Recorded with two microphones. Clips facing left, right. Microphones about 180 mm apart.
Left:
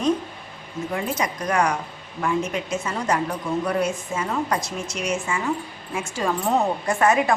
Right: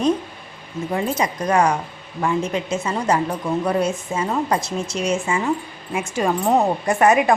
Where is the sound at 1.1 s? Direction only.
30° right (ahead or behind).